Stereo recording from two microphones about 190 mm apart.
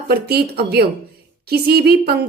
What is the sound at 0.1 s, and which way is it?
A woman's voice, 55° right (ahead or behind).